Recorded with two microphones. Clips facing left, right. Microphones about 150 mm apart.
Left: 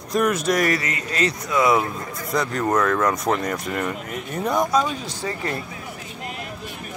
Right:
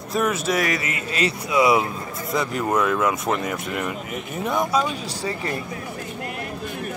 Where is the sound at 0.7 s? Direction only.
25° right (ahead or behind).